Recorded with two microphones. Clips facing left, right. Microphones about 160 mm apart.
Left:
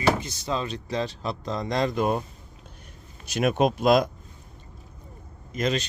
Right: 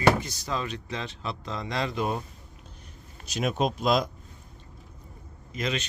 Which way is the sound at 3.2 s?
55° left (ahead or behind).